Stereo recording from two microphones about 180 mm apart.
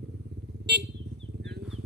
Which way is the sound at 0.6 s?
70° right (ahead or behind).